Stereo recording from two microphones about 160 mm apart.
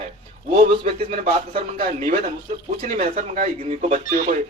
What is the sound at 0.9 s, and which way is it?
Speech, 40° right (ahead or behind).